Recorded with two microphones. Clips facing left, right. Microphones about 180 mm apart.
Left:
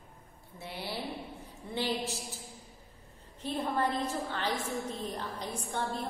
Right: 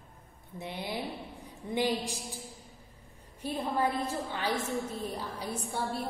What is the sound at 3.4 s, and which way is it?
A woman's voice, 10° right (ahead or behind).